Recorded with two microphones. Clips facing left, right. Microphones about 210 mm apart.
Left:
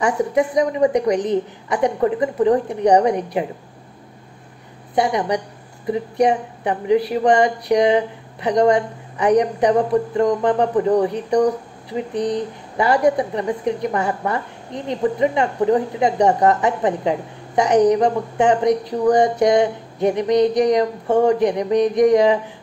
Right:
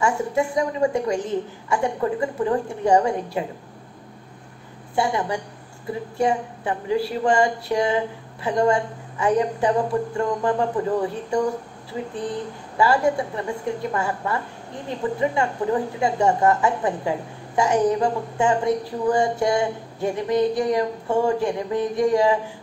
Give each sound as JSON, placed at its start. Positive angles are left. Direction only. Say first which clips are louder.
{"t": 0.0, "sound": "a woman's voice", "louder": "left 4 dB", "side_deg": 20}
{"t": 4.9, "sound": "a woman's voice", "louder": "left 4 dB", "side_deg": 20}